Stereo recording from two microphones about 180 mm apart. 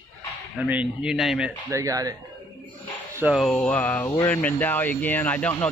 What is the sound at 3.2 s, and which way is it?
A man's voice, centre (ahead or behind).